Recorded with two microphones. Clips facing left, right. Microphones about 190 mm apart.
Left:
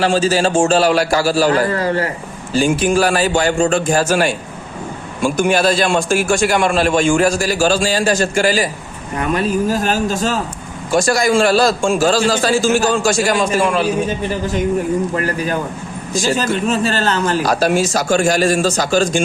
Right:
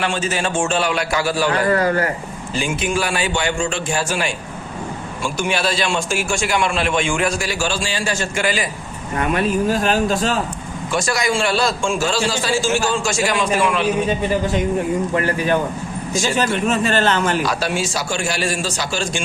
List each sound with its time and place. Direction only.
0.0 s a man's voice: 35° left (ahead or behind); by 6.2 s 50° left (ahead or behind)
6.2 s a man's voice: 40° left (ahead or behind)
15.1 s speech: 40° left (ahead or behind)